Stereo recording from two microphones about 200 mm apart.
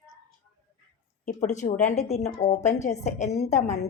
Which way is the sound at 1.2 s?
35° left (ahead or behind).